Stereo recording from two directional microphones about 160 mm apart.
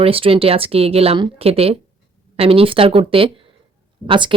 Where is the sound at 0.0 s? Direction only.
35° right (ahead or behind).